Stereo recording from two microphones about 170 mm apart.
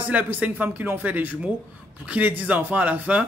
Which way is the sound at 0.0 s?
10° right (ahead or behind).